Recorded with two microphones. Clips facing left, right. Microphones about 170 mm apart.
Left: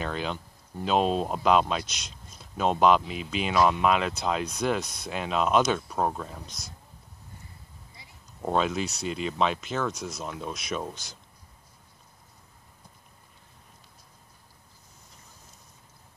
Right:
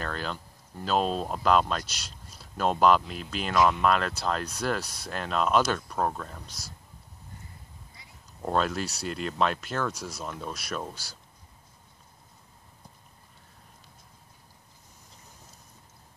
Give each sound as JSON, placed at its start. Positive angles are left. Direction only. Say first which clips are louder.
{"t": 0.0, "sound": "speech", "louder": "left 2 dB", "side_deg": 0}
{"t": 8.4, "sound": "speech", "louder": "left 1 dB", "side_deg": 0}
{"t": 9.9, "sound": "speech", "louder": "left 2 dB", "side_deg": -35}
{"t": 10.2, "sound": "speech", "louder": "even", "side_deg": 0}